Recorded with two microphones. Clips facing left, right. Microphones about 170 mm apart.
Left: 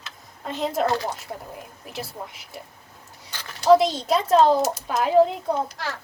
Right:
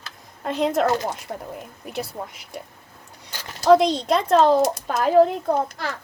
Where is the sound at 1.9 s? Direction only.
Centre (ahead or behind).